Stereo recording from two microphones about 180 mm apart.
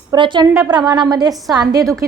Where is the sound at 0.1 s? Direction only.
25° right (ahead or behind).